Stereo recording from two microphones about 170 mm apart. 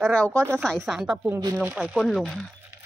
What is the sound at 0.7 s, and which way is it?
Speech, centre (ahead or behind).